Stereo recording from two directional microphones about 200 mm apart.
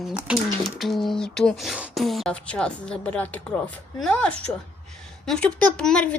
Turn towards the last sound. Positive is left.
turn(degrees=5)  # may be behind; listen again after turning